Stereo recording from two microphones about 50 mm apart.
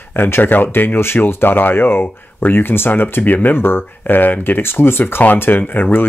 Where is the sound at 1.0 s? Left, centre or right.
Left.